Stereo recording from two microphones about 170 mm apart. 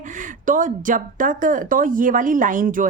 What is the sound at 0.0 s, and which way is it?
Speech, 50° right (ahead or behind).